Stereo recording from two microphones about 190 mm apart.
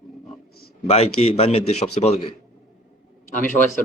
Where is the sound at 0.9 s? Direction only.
30° left (ahead or behind).